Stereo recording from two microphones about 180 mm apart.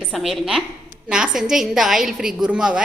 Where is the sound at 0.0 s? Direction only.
Centre (ahead or behind).